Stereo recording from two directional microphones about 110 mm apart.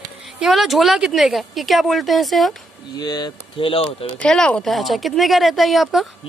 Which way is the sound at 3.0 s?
40° left (ahead or behind).